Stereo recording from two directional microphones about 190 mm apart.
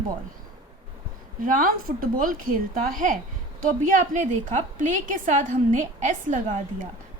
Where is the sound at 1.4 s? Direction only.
45° right (ahead or behind).